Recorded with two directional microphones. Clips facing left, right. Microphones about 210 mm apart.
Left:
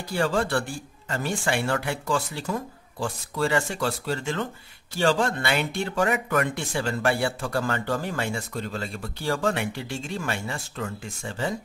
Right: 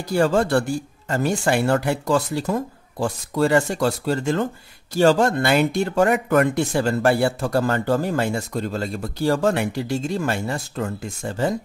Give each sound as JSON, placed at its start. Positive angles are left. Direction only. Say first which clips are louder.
{"t": 0.1, "sound": "speech", "louder": "right 6 dB", "side_deg": -40}